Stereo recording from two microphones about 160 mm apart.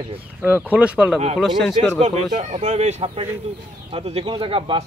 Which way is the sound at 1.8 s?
45° right (ahead or behind).